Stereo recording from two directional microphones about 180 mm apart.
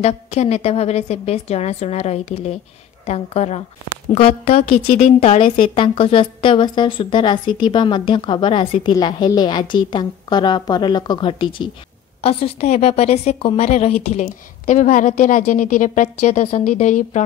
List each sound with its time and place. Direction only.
0.0 s a woman's voice: 40° left (ahead or behind)